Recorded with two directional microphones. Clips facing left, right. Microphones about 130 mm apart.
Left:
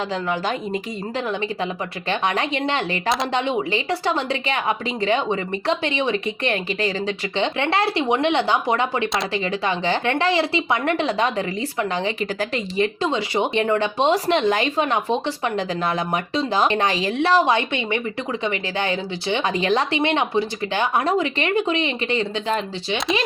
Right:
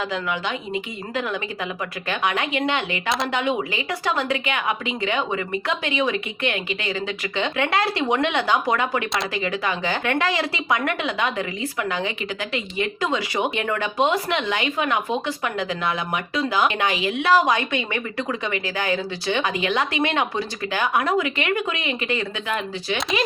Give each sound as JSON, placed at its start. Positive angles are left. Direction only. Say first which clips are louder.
{"t": 0.1, "sound": "speech", "louder": "left 3 dB", "side_deg": 40}
{"t": 13.1, "sound": "speech", "louder": "left 2 dB", "side_deg": 25}
{"t": 20.0, "sound": "speech", "louder": "left 3 dB", "side_deg": 25}